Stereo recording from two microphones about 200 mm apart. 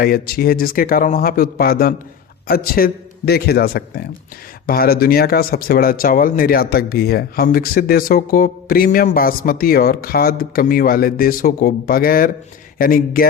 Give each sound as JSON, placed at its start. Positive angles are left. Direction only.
{"t": 0.0, "sound": "speech", "side_deg": 50}